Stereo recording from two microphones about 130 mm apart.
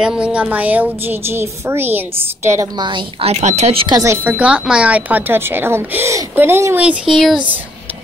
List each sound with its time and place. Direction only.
0.0 s a woman's voice: 5° right (ahead or behind)
2.8 s a woman's voice: 35° right (ahead or behind)
3.3 s speech: 55° right (ahead or behind)
4.0 s a woman's voice: 15° right (ahead or behind)